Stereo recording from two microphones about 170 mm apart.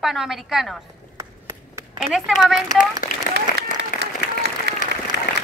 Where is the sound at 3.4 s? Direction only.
80° right.